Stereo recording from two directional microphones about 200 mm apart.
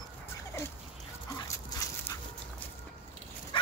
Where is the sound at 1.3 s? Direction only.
15° left (ahead or behind).